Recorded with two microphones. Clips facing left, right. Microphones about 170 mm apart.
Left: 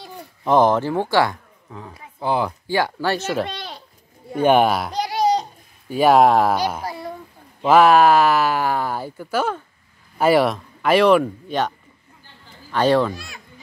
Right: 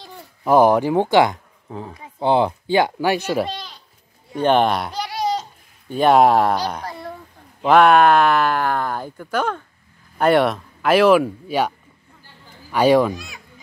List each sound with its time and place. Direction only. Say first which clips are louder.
0.4 s speech: right 2 dB; 10° right (ahead or behind)
1.7 s speech: right 5 dB; 30° right (ahead or behind); by 3.4 s 15° right (ahead or behind)
3.4 s a sound: right 1 dB; 60° left (ahead or behind)
4.4 s speech: left 1 dB; 10° left (ahead or behind)
4.9 s babbling: left 4 dB; 20° left (ahead or behind)
5.9 s a child's voice: even; 5° left (ahead or behind)
12.7 s speech: right 2 dB; 10° right (ahead or behind)